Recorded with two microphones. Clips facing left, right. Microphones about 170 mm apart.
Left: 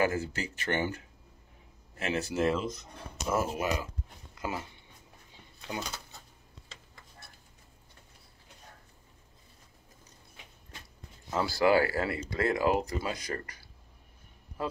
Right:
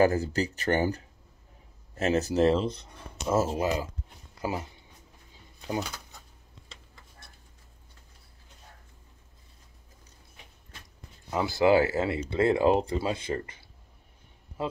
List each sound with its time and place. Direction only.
0.0 s speech: 40° right (ahead or behind)
11.2 s a man's voice: 20° right (ahead or behind)